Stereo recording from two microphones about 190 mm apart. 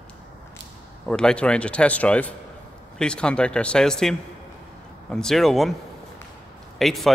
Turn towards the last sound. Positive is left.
turn(degrees=0)  # may be behind; listen again after turning